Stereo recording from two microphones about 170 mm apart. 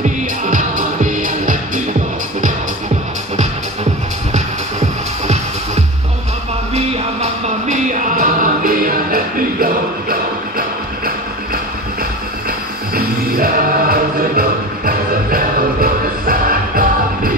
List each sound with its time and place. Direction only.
0.0 s music: 50° right (ahead or behind)
6.7 s music: 40° right (ahead or behind); by 10.1 s 60° right (ahead or behind)
12.9 s music: 60° right (ahead or behind)